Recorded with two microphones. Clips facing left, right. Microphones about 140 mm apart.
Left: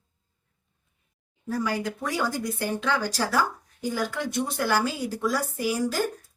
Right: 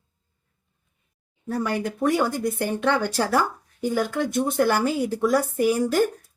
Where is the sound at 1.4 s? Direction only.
60° right (ahead or behind).